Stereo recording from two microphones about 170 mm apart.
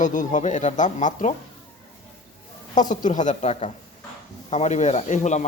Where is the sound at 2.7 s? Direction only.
45° left (ahead or behind).